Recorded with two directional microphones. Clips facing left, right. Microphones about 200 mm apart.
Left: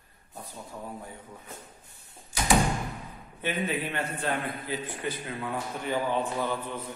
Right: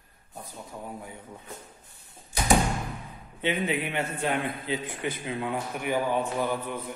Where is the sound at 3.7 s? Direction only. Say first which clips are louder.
Right 2 dB; 20° right (ahead or behind).